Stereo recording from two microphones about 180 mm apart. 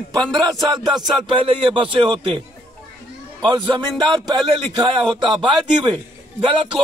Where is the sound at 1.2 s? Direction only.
25° right (ahead or behind).